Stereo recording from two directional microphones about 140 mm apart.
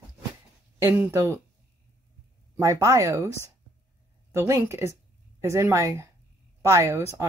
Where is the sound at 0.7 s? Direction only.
15° right (ahead or behind).